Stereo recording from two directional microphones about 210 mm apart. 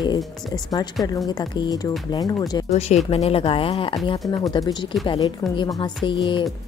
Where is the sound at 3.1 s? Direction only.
25° left (ahead or behind).